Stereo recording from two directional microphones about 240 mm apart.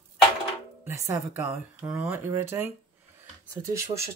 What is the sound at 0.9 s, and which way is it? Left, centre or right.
Speech, centre.